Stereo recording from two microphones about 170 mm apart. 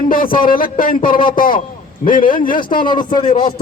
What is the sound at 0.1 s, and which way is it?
A man's voice, 55° left (ahead or behind).